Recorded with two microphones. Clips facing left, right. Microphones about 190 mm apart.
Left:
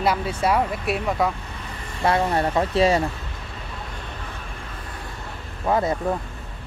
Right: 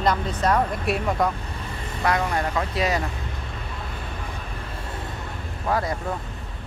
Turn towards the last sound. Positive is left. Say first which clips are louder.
# left 3 dB
turn(degrees=25)  # may be behind; listen again after turning